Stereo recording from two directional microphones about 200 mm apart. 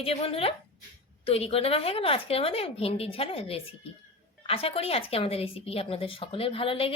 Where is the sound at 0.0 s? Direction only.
30° left (ahead or behind).